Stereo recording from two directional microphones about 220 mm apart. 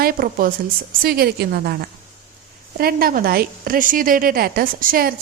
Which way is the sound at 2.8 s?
45° right (ahead or behind).